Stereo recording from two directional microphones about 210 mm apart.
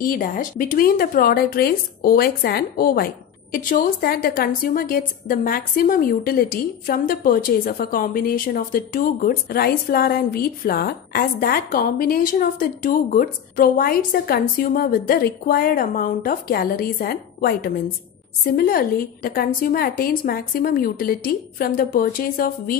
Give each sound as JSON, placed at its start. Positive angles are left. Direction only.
{"t": 0.0, "sound": "a woman's voice", "side_deg": 40}